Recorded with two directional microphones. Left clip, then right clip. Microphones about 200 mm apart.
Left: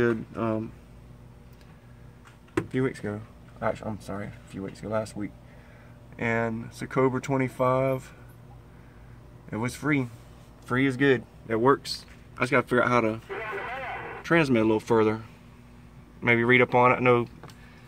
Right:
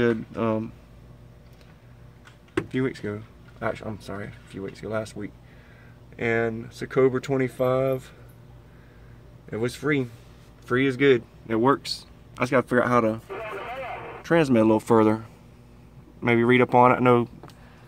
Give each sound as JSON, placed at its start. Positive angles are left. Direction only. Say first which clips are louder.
{"t": 0.0, "sound": "speech", "louder": "right 2 dB", "side_deg": -10}
{"t": 2.7, "sound": "speech", "louder": "right 1 dB", "side_deg": -10}
{"t": 9.5, "sound": "speech", "louder": "right 3 dB", "side_deg": -10}
{"t": 14.2, "sound": "speech", "louder": "right 3 dB", "side_deg": -15}
{"t": 16.2, "sound": "speech", "louder": "right 1 dB", "side_deg": -20}